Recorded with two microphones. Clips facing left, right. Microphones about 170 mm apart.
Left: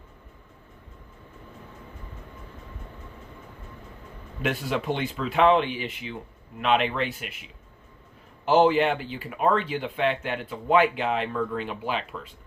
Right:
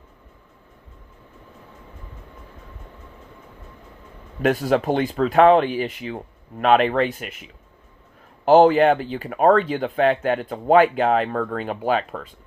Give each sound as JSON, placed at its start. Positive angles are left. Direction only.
{"t": 4.4, "sound": "speech", "side_deg": -45}
{"t": 8.4, "sound": "speech", "side_deg": -45}